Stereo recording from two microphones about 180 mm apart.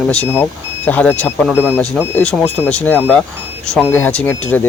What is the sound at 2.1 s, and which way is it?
Speech, 5° left (ahead or behind).